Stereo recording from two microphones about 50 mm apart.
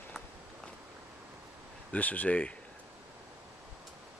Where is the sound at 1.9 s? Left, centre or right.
Left.